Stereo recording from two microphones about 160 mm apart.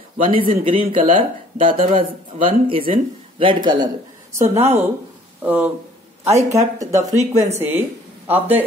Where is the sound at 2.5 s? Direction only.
35° right (ahead or behind).